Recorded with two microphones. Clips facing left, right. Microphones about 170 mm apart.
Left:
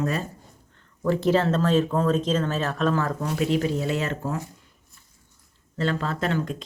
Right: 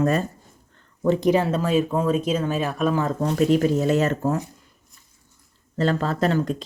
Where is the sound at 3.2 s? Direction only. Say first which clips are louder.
Right 5 dB; 40° right (ahead or behind).